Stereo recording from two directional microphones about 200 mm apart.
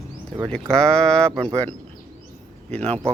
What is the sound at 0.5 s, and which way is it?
Speech, 5° left (ahead or behind).